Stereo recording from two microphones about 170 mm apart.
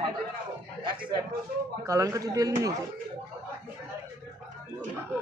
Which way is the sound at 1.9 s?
20° right (ahead or behind).